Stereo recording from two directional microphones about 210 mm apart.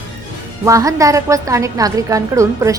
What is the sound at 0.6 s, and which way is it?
A woman's voice, 15° right (ahead or behind).